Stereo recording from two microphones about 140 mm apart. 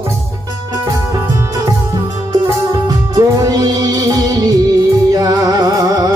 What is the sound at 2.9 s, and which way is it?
Music, 30° right (ahead or behind).